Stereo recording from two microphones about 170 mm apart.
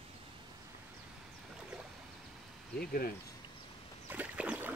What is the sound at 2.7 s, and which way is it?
Speech, 60° left (ahead or behind).